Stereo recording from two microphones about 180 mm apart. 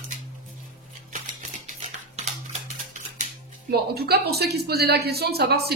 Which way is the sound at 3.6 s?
60° right (ahead or behind).